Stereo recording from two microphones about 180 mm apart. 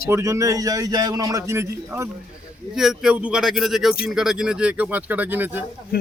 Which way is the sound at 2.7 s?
Centre (ahead or behind).